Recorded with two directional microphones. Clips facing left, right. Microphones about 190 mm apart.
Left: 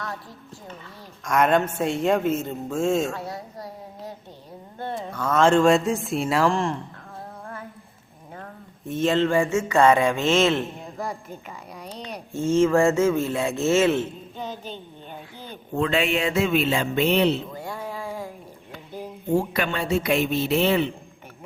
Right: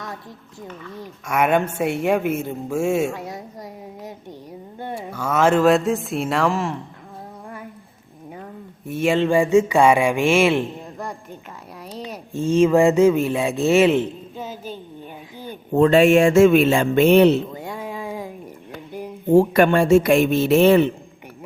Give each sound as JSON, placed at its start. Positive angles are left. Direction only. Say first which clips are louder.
{"t": 1.2, "sound": "a woman's voice", "louder": "right 1 dB", "side_deg": -10}
{"t": 8.9, "sound": "speech", "louder": "right 2 dB", "side_deg": -10}
{"t": 11.9, "sound": "speech", "louder": "right 4 dB", "side_deg": -5}
{"t": 12.3, "sound": "speech", "louder": "right 3 dB", "side_deg": -15}
{"t": 15.7, "sound": "speech", "louder": "right 10 dB", "side_deg": -40}
{"t": 17.5, "sound": "a sound", "louder": "right 2 dB", "side_deg": -20}
{"t": 19.3, "sound": "speech", "louder": "right 9 dB", "side_deg": -50}